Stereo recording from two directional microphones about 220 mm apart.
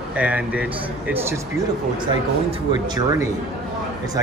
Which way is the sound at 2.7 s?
15° right (ahead or behind).